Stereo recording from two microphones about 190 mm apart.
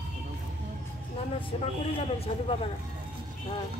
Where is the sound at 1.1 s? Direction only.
30° left (ahead or behind).